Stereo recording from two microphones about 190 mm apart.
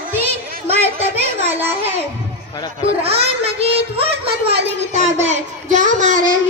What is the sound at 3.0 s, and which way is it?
Child singing, 30° right (ahead or behind).